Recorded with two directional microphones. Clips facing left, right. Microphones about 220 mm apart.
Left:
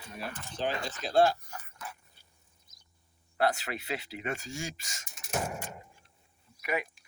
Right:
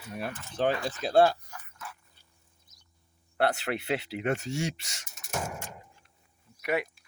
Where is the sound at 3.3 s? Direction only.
65° right (ahead or behind).